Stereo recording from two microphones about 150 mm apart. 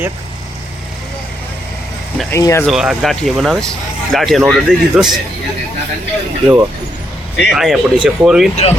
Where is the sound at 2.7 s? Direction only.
Centre (ahead or behind).